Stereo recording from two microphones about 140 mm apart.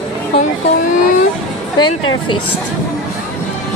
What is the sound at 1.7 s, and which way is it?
Speech, 30° left (ahead or behind).